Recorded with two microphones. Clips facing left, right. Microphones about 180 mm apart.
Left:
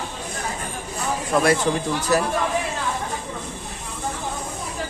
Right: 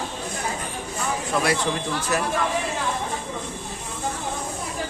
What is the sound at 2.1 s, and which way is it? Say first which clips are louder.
Speech: left 5 dB; 35° left (ahead or behind).